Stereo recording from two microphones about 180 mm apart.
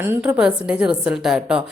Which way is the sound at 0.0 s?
10° right (ahead or behind).